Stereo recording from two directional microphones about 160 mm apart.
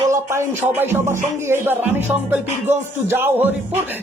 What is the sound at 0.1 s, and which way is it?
Music, 15° right (ahead or behind).